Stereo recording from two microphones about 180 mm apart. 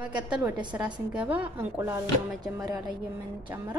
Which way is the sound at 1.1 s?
5° right (ahead or behind).